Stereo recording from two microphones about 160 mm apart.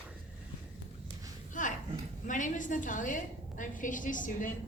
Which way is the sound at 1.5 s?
55° left (ahead or behind).